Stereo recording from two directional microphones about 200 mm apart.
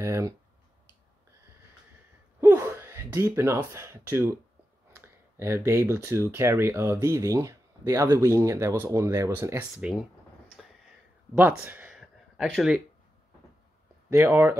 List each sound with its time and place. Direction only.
0.0 s speech: 15° right (ahead or behind)
2.4 s gasp: 10° right (ahead or behind)
4.9 s speech: 10° right (ahead or behind)
11.3 s speech: 10° right (ahead or behind)
14.1 s speech: 15° right (ahead or behind)